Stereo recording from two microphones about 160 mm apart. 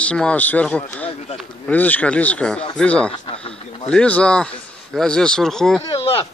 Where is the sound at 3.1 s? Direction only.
35° left (ahead or behind).